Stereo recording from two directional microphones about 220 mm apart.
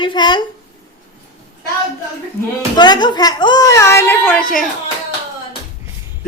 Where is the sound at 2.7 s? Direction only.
20° left (ahead or behind).